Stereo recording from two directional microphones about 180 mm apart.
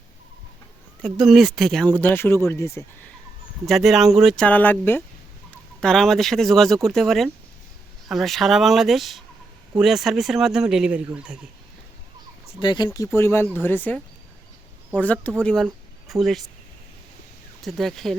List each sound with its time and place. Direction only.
1.0 s speech: centre (ahead or behind)
2.0 s speech: 10° left (ahead or behind)
3.7 s speech: centre (ahead or behind)
12.5 s speech: 25° left (ahead or behind); by 16.5 s centre (ahead or behind)
17.6 s speech: centre (ahead or behind)